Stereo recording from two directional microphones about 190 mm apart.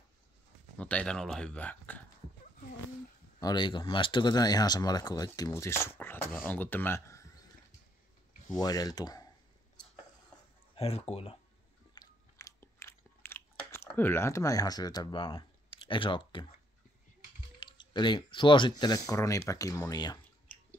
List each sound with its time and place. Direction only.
0.7 s speech: 5° left (ahead or behind)
3.3 s speech: 20° left (ahead or behind)
8.5 s speech: 20° left (ahead or behind)
10.8 s speech: 30° left (ahead or behind)
11.9 s biting: 20° left (ahead or behind)
13.7 s speech: 10° left (ahead or behind)
17.6 s speech: 25° left (ahead or behind)